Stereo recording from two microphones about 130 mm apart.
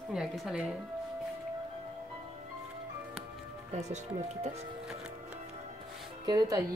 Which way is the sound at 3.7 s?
60° right (ahead or behind).